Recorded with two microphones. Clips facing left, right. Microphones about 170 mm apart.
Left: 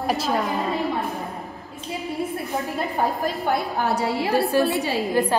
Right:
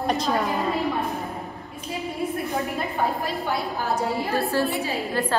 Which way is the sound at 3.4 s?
65° left (ahead or behind).